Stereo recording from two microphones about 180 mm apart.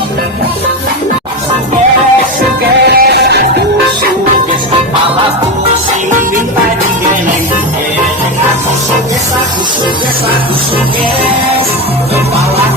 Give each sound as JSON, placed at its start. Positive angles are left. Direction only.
{"t": 2.8, "sound": "music", "side_deg": -65}
{"t": 6.1, "sound": "music", "side_deg": -45}